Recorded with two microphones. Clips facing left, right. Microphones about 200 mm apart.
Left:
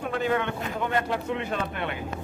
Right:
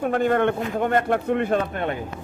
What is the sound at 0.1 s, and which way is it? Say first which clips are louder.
A man's voice: right 5 dB; 50° right (ahead or behind).